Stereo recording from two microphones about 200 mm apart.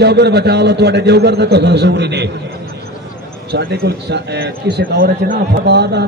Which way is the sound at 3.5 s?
50° right (ahead or behind).